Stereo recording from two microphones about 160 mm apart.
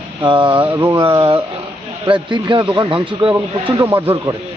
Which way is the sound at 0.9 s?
30° right (ahead or behind).